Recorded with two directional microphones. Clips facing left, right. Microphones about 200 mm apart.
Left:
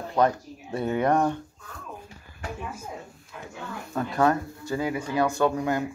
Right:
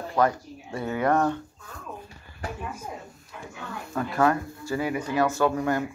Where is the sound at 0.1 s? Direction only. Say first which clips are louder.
Left 1 dB; 20° left (ahead or behind).